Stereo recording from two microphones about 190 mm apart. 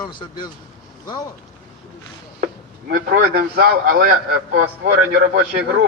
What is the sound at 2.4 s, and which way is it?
A man's voice, 50° right (ahead or behind).